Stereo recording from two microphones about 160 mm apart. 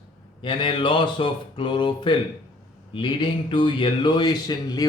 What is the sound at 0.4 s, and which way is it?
Speech, 30° left (ahead or behind).